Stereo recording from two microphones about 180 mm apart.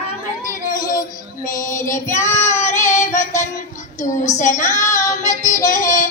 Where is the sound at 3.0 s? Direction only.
40° left (ahead or behind).